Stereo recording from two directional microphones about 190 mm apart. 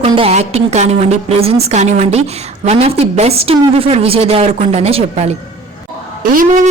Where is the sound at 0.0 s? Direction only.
30° right (ahead or behind).